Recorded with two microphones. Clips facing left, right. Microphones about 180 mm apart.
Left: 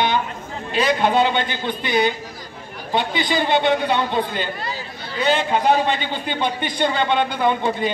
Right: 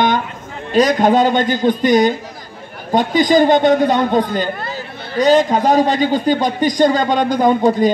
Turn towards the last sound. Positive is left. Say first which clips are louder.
# right 7 dB
turn(degrees=-40)  # may be behind; listen again after turning